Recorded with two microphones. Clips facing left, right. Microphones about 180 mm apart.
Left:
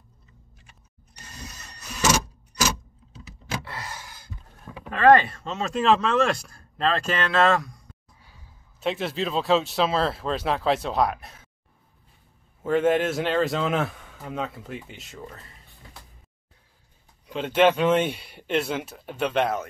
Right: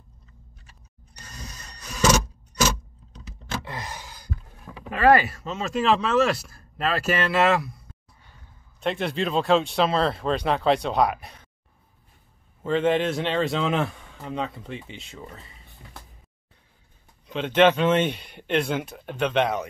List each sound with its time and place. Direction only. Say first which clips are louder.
1.5 s vehicle: right 1 dB; 5° left (ahead or behind)
3.1 s keys jangling: even; 5° left (ahead or behind)
3.6 s a sound: right 2 dB; 15° right (ahead or behind)
4.9 s speech: left 1 dB; 10° right (ahead or behind)
8.8 s a man's voice: right 1 dB; centre (ahead or behind)
12.6 s a man's voice: left 1 dB; 5° left (ahead or behind)
17.3 s speech: right 1 dB; 10° left (ahead or behind)